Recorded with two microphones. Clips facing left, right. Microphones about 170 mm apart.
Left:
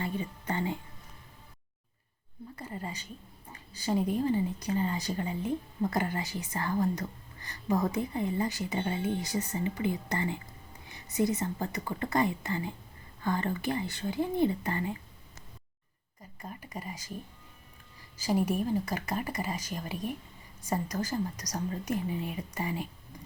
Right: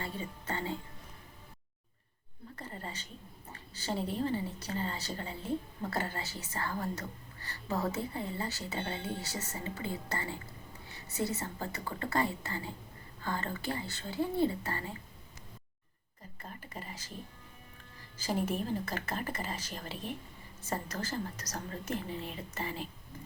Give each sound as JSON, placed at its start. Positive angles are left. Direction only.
{"t": 0.0, "sound": "a sound", "side_deg": 15}
{"t": 2.6, "sound": "a woman's voice", "side_deg": 10}
{"t": 16.4, "sound": "a woman's voice", "side_deg": 15}
{"t": 18.2, "sound": "a woman's voice", "side_deg": 10}